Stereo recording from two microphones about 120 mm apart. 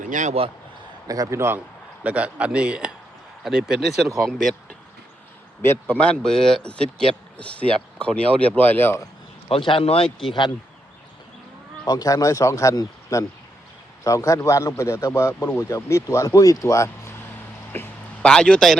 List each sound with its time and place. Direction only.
0.1 s a man's voice: 90° right
1.0 s a man's voice: 30° right (ahead or behind)
2.0 s speech: 10° right (ahead or behind)
5.6 s speech: 15° left (ahead or behind)
9.5 s speech: 45° left (ahead or behind)
11.9 s a man's voice: 30° left (ahead or behind); by 18.8 s 5° left (ahead or behind)